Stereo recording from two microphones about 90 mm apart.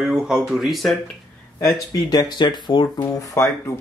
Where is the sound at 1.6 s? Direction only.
35° left (ahead or behind).